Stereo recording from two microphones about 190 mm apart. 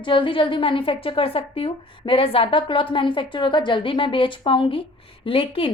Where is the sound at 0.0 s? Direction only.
25° left (ahead or behind).